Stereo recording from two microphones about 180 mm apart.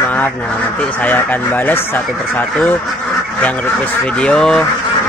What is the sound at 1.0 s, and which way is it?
Speech, 10° left (ahead or behind).